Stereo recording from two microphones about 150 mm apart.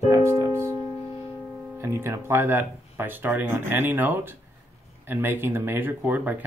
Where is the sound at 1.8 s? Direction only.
15° right (ahead or behind).